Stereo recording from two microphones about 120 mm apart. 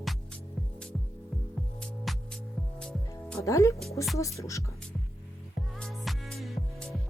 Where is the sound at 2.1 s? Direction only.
Centre (ahead or behind).